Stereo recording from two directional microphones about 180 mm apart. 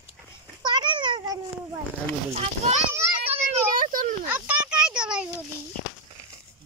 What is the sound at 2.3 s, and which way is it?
Children playing, 35° right (ahead or behind).